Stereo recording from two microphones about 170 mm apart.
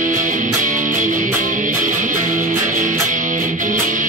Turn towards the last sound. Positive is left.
turn(degrees=-50)  # may be behind; listen again after turning